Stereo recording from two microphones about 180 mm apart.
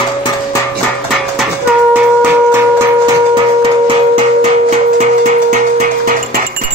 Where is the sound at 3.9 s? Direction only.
30° right (ahead or behind); by 6.4 s 50° right (ahead or behind).